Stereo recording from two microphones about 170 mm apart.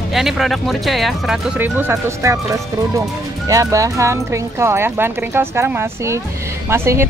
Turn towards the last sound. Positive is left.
turn(degrees=-15)  # may be behind; listen again after turning